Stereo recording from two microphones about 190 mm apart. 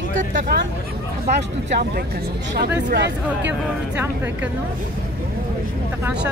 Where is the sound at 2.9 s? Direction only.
65° right (ahead or behind).